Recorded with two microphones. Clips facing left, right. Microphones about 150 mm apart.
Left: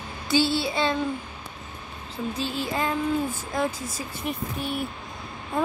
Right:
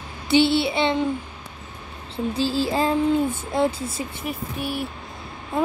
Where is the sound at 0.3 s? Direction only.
25° right (ahead or behind).